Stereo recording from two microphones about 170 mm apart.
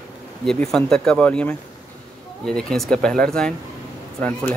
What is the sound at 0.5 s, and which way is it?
Speech, 5° left (ahead or behind).